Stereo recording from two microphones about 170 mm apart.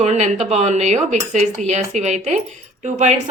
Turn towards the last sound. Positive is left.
turn(degrees=-45)  # may be behind; listen again after turning